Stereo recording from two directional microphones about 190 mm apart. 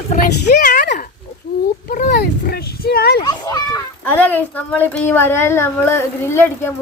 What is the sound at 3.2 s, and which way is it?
Speech, 20° left (ahead or behind).